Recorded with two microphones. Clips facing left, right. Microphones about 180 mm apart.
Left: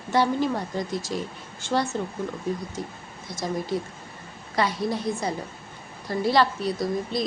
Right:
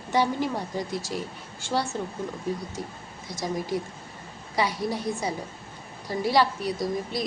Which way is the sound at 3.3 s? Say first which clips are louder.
Left 1 dB; 15° right (ahead or behind).